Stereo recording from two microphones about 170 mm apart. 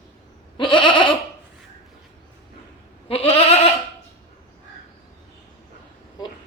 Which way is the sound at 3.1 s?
35° left (ahead or behind).